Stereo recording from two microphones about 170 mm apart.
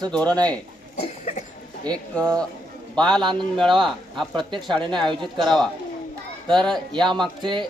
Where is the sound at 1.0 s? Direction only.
40° left (ahead or behind).